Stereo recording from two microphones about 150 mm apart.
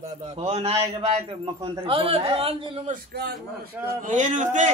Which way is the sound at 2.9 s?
90° right.